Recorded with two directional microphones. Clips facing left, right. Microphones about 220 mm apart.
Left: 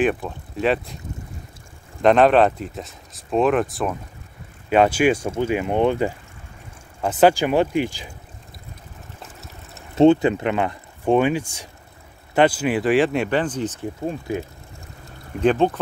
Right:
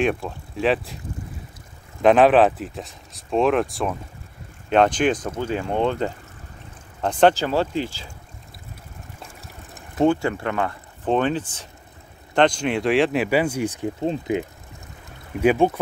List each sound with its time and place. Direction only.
0.0 s speech: centre (ahead or behind)
2.0 s speech: centre (ahead or behind); by 8.1 s 15° left (ahead or behind)
9.9 s speech: 20° left (ahead or behind); by 15.8 s 10° right (ahead or behind)